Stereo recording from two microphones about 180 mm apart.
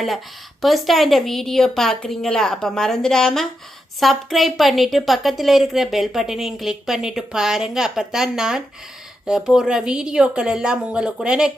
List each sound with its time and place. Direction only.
0.6 s a woman's voice: centre (ahead or behind)